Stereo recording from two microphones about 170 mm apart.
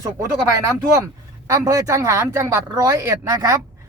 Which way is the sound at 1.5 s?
20° right (ahead or behind).